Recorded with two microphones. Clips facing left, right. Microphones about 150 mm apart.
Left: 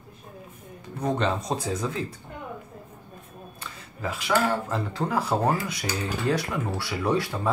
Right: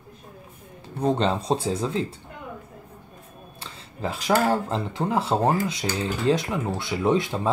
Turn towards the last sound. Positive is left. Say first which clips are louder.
# right 3 dB
turn(degrees=-20)  # may be behind; listen again after turning